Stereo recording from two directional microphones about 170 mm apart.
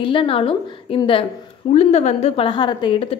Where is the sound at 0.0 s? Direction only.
30° left (ahead or behind).